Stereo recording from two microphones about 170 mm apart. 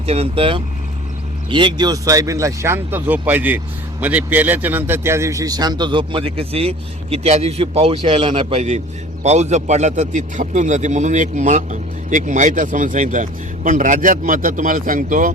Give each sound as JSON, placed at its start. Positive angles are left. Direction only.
{"t": 0.0, "sound": "a man's voice", "side_deg": -35}